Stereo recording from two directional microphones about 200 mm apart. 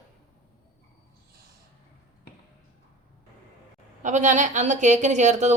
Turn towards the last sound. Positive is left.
turn(degrees=-35)  # may be behind; listen again after turning